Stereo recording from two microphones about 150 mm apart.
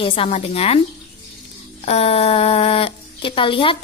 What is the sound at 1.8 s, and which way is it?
A woman's voice, 40° left (ahead or behind).